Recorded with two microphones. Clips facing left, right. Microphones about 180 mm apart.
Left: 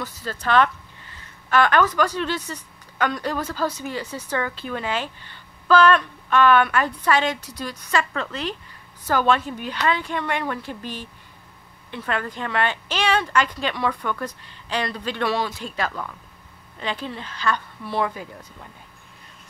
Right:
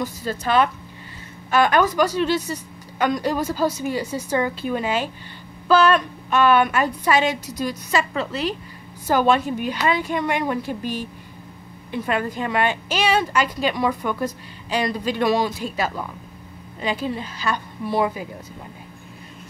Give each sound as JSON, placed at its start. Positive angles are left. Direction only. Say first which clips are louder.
{"t": 0.0, "sound": "a woman's voice", "louder": "right 4 dB", "side_deg": -10}
{"t": 7.3, "sound": "a woman's voice", "louder": "right 7 dB", "side_deg": -45}
{"t": 7.6, "sound": "a woman's voice", "louder": "right 2 dB", "side_deg": -10}